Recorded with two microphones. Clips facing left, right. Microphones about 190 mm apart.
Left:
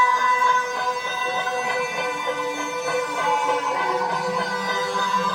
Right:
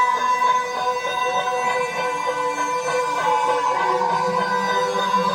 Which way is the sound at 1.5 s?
Centre (ahead or behind).